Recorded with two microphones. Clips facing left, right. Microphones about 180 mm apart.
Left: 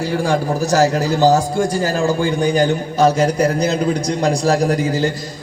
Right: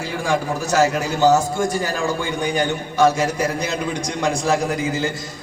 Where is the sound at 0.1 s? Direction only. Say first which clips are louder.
Left 2 dB; 35° left (ahead or behind).